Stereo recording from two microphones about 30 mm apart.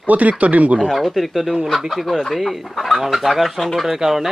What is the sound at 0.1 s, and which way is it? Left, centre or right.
Speech, right.